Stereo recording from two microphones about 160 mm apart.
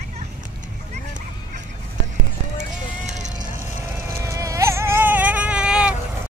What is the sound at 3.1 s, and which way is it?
Vehicle, 50° right (ahead or behind).